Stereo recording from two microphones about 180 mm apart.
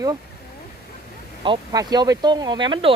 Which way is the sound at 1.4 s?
25° right (ahead or behind).